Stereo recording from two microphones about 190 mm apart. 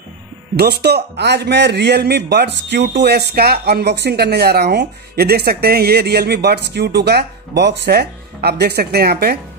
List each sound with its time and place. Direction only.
0.6 s speech: 55° right (ahead or behind)